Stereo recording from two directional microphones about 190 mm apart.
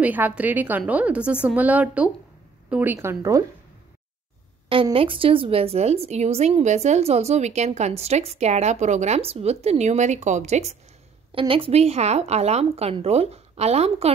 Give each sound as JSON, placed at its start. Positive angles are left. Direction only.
{"t": 0.0, "sound": "a woman's voice", "side_deg": -10}
{"t": 4.6, "sound": "a woman's voice", "side_deg": -30}